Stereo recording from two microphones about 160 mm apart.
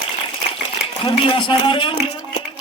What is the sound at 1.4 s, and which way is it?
Speech, 30° left (ahead or behind).